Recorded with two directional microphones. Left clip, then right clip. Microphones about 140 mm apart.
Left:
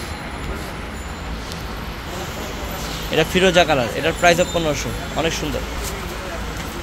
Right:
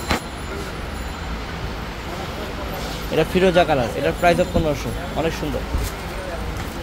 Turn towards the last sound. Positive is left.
turn(degrees=-5)  # may be behind; listen again after turning